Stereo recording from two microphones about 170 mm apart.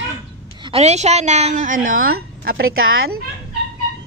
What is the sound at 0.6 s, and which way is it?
A woman's voice, 35° right (ahead or behind).